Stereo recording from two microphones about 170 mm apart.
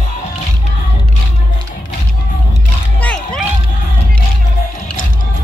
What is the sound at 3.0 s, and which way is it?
Music, 5° left (ahead or behind).